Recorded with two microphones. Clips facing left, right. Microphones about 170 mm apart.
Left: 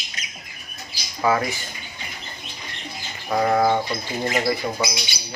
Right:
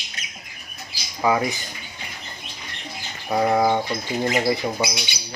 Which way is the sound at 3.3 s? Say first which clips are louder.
Even; 10° right (ahead or behind).